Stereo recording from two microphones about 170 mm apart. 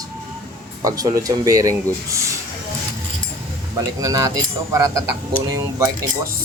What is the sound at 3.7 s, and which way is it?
Speech, 20° right (ahead or behind).